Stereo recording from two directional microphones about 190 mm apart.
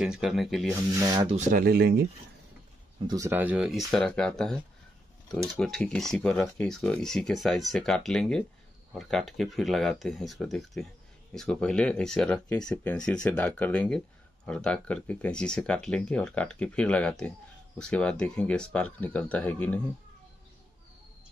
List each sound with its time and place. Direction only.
0.0 s speech: centre (ahead or behind)
0.9 s speech: 20° right (ahead or behind)
1.3 s speech: 50° right (ahead or behind)
3.1 s speech: 15° right (ahead or behind); by 4.6 s 5° left (ahead or behind)
5.6 s speech: 5° left (ahead or behind)